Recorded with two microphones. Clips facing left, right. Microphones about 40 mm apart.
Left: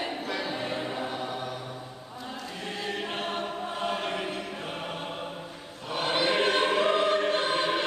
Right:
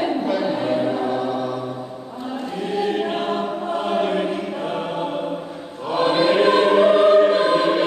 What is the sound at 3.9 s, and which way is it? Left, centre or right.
Choir, centre.